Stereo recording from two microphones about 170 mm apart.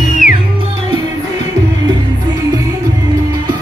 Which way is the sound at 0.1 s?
50° left (ahead or behind).